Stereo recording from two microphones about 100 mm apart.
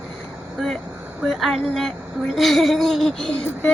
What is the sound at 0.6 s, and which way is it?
A woman's voice, centre (ahead or behind).